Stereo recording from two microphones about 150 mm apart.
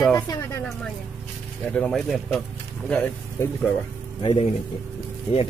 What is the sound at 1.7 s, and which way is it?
Speech, 5° left (ahead or behind).